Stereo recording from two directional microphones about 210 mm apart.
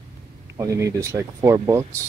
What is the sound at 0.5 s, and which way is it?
Speech, 15° right (ahead or behind).